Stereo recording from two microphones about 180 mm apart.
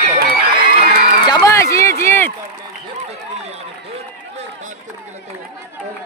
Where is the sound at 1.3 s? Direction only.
20° left (ahead or behind).